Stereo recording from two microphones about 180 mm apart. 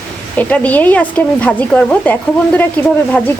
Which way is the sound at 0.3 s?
5° left (ahead or behind).